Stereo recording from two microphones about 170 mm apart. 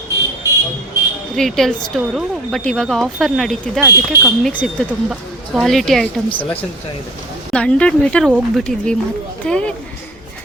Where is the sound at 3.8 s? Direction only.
15° right (ahead or behind).